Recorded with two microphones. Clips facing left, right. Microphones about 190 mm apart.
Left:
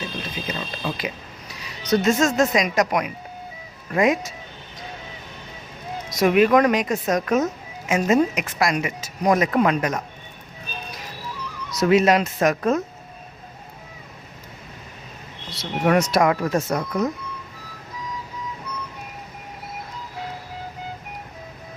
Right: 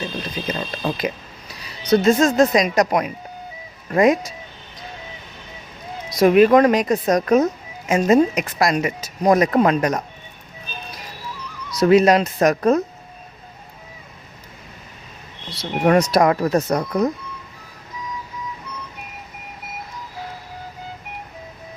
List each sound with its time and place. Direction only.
0.4 s speech: 45° right (ahead or behind)
1.8 s speech: 30° right (ahead or behind)
6.1 s speech: 35° right (ahead or behind)
11.7 s speech: 35° right (ahead or behind)
15.5 s speech: 35° right (ahead or behind)